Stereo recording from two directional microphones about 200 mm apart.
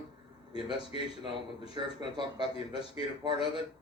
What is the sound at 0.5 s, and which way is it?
A man's voice, 25° right (ahead or behind).